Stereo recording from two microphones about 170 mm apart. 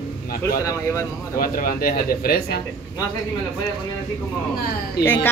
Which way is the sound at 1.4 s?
55° left (ahead or behind).